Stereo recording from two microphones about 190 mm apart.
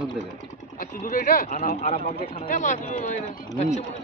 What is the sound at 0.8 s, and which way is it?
Speech, 45° left (ahead or behind).